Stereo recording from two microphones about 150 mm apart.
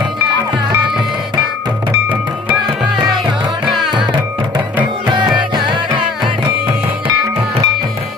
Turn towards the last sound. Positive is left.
turn(degrees=-35)  # may be behind; listen again after turning